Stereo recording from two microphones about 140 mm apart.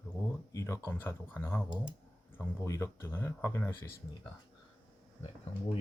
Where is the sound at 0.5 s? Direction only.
20° left (ahead or behind).